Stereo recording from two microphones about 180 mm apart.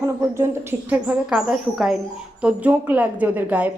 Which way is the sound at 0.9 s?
5° right (ahead or behind).